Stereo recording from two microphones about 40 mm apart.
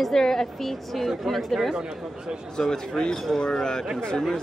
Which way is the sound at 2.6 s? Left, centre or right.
Centre.